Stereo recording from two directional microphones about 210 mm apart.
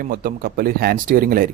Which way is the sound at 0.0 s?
40° right (ahead or behind).